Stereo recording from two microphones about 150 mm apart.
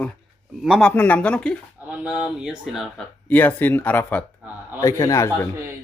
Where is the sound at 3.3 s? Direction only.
10° left (ahead or behind).